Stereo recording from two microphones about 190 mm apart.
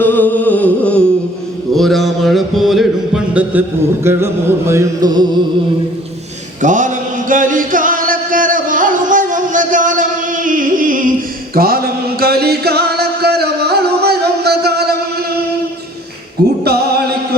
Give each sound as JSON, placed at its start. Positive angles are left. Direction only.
{"t": 0.0, "sound": "music", "side_deg": 10}
{"t": 1.7, "sound": "a sound", "side_deg": 0}
{"t": 4.0, "sound": "music", "side_deg": -15}
{"t": 6.6, "sound": "chant", "side_deg": -40}
{"t": 11.5, "sound": "mantra", "side_deg": -50}
{"t": 12.2, "sound": "music", "side_deg": -55}